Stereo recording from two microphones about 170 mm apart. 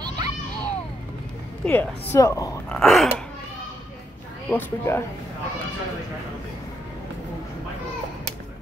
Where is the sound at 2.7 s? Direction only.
Centre (ahead or behind).